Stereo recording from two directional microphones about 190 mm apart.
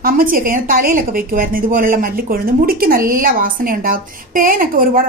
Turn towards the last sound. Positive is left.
turn(degrees=-50)  # may be behind; listen again after turning